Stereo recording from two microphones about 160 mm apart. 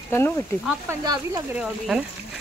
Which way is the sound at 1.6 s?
5° right (ahead or behind).